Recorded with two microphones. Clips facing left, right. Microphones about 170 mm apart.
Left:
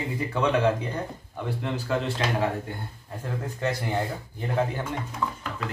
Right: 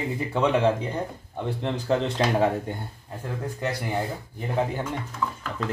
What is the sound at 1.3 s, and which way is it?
Speech, 35° right (ahead or behind).